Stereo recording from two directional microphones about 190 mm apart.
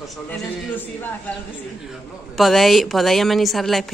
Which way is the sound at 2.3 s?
Centre (ahead or behind).